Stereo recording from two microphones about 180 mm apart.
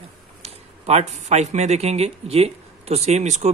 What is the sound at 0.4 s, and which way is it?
Speech, 35° right (ahead or behind).